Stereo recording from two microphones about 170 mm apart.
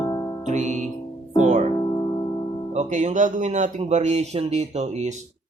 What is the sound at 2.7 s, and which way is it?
Speech, 45° right (ahead or behind).